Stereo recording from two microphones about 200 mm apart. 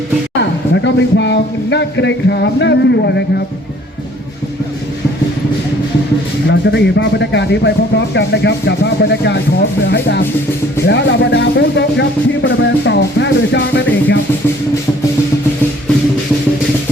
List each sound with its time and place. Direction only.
0.7 s speech: 65° left (ahead or behind)
6.5 s speech: 60° left (ahead or behind)